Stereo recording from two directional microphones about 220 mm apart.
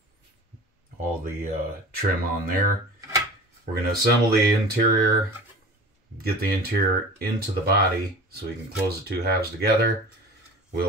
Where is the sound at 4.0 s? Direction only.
45° right (ahead or behind).